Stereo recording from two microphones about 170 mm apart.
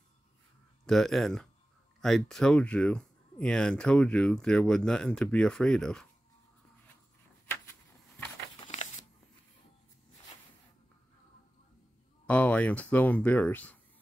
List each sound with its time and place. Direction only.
0.8 s speech: 5° left (ahead or behind)
8.6 s a sound: 45° left (ahead or behind)
12.3 s speech: 10° left (ahead or behind)